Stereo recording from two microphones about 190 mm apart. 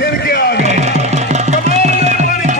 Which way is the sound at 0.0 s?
55° left (ahead or behind).